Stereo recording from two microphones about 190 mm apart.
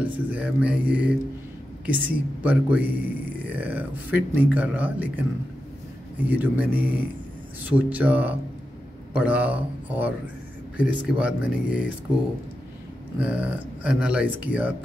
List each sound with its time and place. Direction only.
0.0 s speech: 10° right (ahead or behind)
13.2 s speech: 5° right (ahead or behind)